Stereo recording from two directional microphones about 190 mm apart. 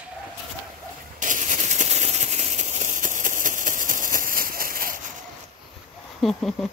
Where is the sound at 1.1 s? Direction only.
40° right (ahead or behind).